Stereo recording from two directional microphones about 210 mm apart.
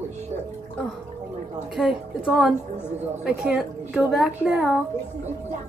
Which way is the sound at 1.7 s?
Centre (ahead or behind).